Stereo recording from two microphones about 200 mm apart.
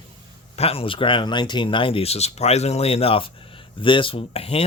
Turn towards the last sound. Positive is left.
turn(degrees=30)  # may be behind; listen again after turning